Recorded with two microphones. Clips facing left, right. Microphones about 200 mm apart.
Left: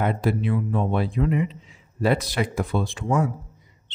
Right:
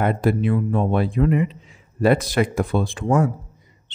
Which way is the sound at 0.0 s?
55° right (ahead or behind).